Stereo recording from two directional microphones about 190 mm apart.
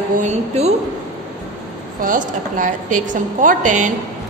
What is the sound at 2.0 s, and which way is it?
A woman's voice, 45° right (ahead or behind).